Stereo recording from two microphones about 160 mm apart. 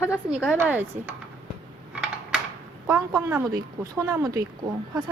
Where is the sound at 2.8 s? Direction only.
20° right (ahead or behind).